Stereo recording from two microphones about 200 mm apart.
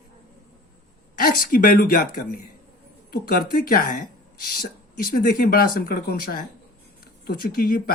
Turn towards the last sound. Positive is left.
turn(degrees=45)  # may be behind; listen again after turning